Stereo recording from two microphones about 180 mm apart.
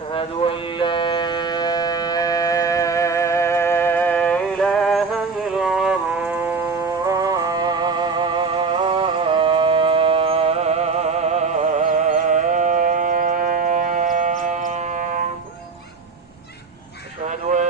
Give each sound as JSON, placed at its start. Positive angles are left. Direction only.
{"t": 0.1, "sound": "music", "side_deg": 30}
{"t": 7.0, "sound": "music", "side_deg": -20}
{"t": 17.2, "sound": "a sound", "side_deg": -40}